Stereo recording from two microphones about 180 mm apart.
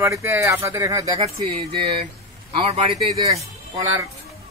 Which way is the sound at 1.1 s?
30° right (ahead or behind).